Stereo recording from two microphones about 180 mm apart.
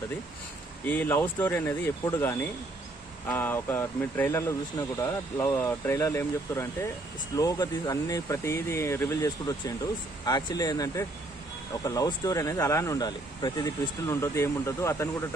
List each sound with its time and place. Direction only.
0.8 s speech: 10° left (ahead or behind)